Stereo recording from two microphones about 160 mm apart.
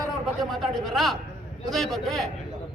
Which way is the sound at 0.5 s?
Centre (ahead or behind).